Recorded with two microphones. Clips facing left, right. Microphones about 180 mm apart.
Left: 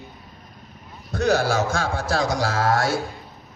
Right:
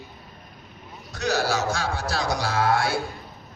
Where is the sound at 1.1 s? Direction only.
55° left (ahead or behind).